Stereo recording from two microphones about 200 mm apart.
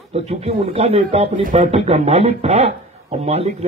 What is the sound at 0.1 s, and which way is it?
Speech, 30° right (ahead or behind).